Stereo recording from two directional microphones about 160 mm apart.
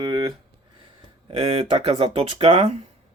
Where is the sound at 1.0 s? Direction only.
35° right (ahead or behind).